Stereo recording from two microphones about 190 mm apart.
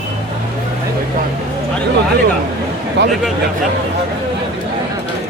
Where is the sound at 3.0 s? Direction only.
70° right (ahead or behind).